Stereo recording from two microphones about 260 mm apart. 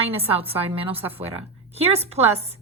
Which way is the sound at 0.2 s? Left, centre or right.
Right.